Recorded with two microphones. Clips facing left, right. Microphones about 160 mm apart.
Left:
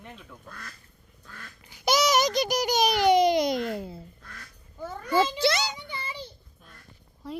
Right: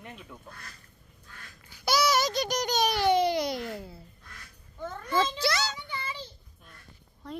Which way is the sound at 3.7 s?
20° left (ahead or behind).